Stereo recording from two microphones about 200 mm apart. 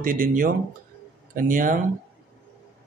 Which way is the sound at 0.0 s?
45° right (ahead or behind).